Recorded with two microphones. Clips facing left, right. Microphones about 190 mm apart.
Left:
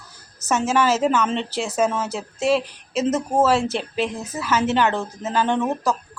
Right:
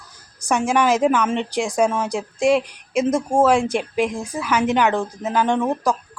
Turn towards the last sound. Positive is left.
turn(degrees=-10)  # may be behind; listen again after turning